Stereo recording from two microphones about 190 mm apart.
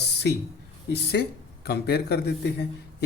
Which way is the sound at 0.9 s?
60° left (ahead or behind).